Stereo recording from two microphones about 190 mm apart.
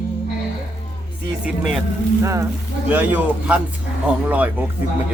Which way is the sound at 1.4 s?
Centre (ahead or behind).